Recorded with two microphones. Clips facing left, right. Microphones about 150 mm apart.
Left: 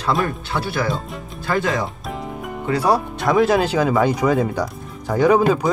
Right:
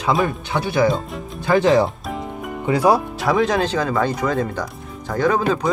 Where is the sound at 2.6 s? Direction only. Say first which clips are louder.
Right 2 dB; 10° right (ahead or behind); by 5.6 s 10° left (ahead or behind).